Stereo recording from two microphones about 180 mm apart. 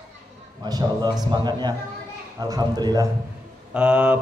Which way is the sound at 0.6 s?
20° right (ahead or behind).